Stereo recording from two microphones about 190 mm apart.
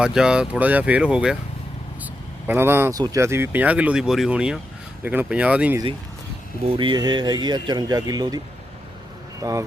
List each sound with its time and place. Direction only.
0.0 s speech: 5° right (ahead or behind)
2.5 s speech: 10° right (ahead or behind)
6.7 s speech: 25° right (ahead or behind)
9.4 s speech: 15° right (ahead or behind)